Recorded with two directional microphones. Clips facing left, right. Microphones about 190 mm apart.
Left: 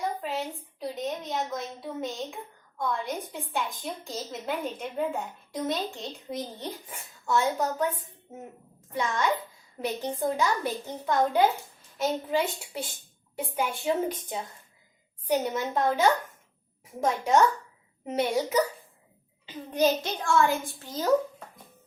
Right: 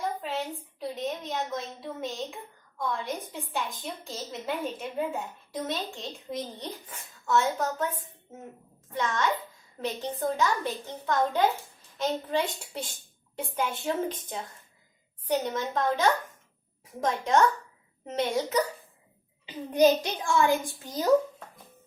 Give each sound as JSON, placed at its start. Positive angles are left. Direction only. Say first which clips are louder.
{"t": 0.0, "sound": "a sound", "louder": "left 1 dB", "side_deg": 0}
{"t": 1.5, "sound": "a woman's voice", "louder": "even", "side_deg": 0}
{"t": 8.9, "sound": "a child's voice", "louder": "left 1 dB", "side_deg": 10}
{"t": 19.5, "sound": "a child's voice", "louder": "right 3 dB", "side_deg": -15}